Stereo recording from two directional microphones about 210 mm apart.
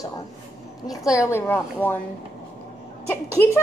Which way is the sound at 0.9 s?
15° left (ahead or behind).